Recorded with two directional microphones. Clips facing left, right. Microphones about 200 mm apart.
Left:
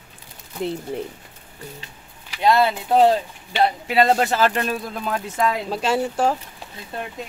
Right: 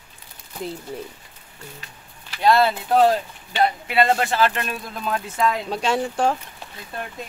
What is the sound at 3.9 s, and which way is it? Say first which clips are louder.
Speech: left 4 dB; 35° left (ahead or behind).